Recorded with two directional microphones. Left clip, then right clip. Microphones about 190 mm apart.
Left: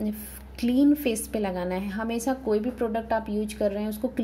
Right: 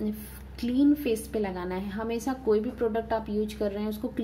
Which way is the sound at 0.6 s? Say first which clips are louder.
Left 2 dB; 20° left (ahead or behind).